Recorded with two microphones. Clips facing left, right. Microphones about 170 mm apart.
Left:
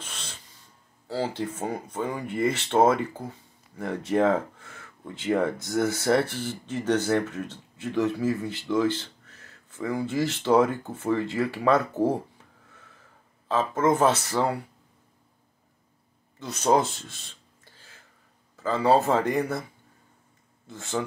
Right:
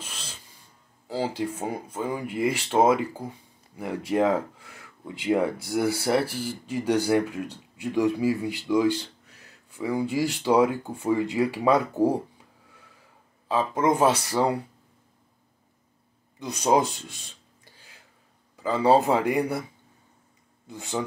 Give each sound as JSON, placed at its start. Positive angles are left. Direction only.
{"t": 0.0, "sound": "a sound", "side_deg": -10}
{"t": 1.0, "sound": "speech", "side_deg": -15}
{"t": 13.5, "sound": "speech", "side_deg": -15}
{"t": 16.3, "sound": "speech", "side_deg": -15}
{"t": 17.6, "sound": "a sound", "side_deg": -15}
{"t": 18.6, "sound": "speech", "side_deg": -15}
{"t": 20.6, "sound": "speech", "side_deg": -15}